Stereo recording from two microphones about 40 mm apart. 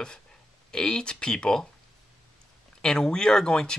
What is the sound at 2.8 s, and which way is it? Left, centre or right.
Speech, centre.